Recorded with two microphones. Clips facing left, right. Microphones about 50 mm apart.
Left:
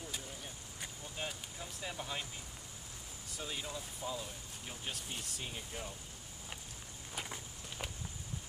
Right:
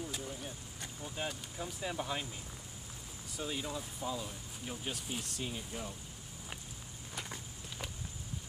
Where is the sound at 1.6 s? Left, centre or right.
Centre.